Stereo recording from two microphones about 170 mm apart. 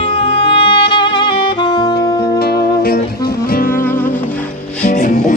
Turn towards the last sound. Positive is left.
turn(degrees=45)  # may be behind; listen again after turning